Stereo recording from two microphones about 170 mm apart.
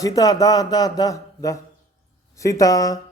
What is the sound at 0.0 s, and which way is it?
Speech, 20° left (ahead or behind).